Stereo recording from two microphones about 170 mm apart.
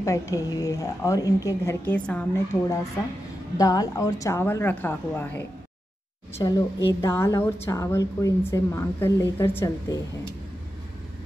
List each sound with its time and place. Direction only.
0.0 s a woman's voice: 20° left (ahead or behind)
6.4 s a woman's voice: 20° left (ahead or behind)